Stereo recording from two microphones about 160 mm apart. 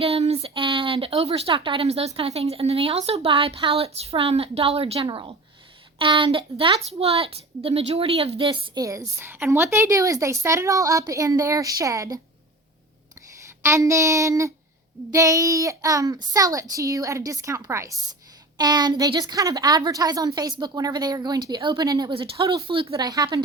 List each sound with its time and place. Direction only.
0.0 s a woman's voice: 40° right (ahead or behind); by 12.2 s 20° right (ahead or behind)
13.6 s a woman's voice: 20° right (ahead or behind)